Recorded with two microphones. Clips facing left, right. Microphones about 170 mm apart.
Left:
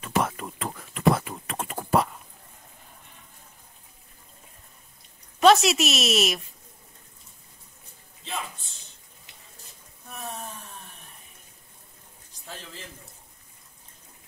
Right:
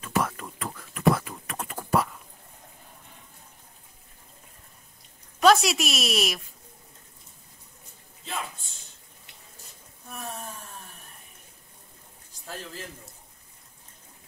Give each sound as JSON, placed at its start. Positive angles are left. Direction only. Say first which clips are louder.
{"t": 0.0, "sound": "computer keyboard", "louder": "left 1 dB", "side_deg": 20}
{"t": 5.4, "sound": "a woman's voice", "louder": "left 2 dB", "side_deg": 0}